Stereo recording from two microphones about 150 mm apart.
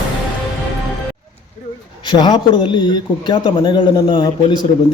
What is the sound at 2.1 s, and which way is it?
A man's voice, 30° left (ahead or behind).